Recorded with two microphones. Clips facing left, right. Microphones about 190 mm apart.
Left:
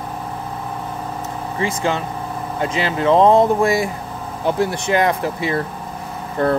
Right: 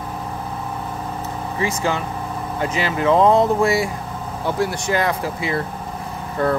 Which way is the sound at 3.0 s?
20° left (ahead or behind).